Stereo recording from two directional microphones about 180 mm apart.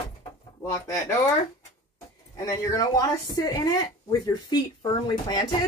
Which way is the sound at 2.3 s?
15° left (ahead or behind).